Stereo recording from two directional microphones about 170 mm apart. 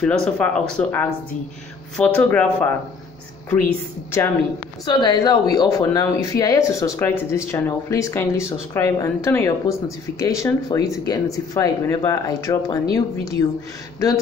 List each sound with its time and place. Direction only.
0.0 s speech: 5° left (ahead or behind)
4.8 s speech: 25° left (ahead or behind)